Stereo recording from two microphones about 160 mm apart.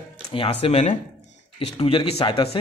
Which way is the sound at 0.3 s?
35° left (ahead or behind).